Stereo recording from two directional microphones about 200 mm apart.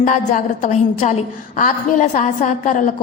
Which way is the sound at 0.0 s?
40° left (ahead or behind).